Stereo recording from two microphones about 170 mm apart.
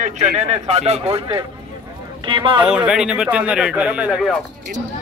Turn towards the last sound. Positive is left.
turn(degrees=-5)  # may be behind; listen again after turning